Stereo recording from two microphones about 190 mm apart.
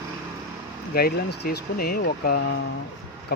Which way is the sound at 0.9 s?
55° left (ahead or behind).